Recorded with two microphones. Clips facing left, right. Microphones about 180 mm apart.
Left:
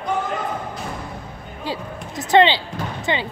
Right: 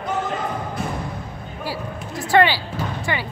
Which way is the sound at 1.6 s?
20° left (ahead or behind).